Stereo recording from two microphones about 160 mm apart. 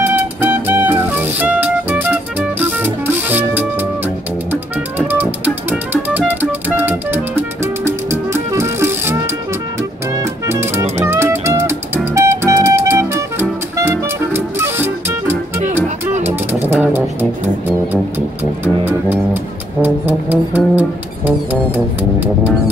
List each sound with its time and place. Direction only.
0.0 s music: 10° right (ahead or behind)
10.1 s music: 15° right (ahead or behind)